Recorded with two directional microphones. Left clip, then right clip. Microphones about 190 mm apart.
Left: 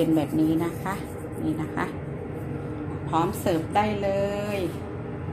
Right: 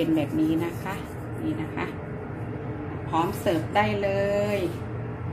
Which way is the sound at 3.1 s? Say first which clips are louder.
Even; 25° left (ahead or behind).